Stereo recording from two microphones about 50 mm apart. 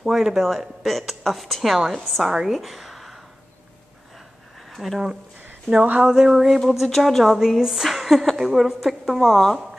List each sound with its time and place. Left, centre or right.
0.0 s a woman's voice: centre
4.6 s speech: centre
5.9 s speech: right
6.3 s a woman's voice: centre
7.3 s a woman's voice: centre